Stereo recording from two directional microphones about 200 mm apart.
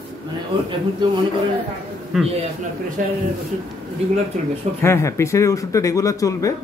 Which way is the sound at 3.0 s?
40° right (ahead or behind).